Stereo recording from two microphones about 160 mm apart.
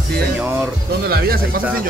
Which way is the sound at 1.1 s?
70° right (ahead or behind).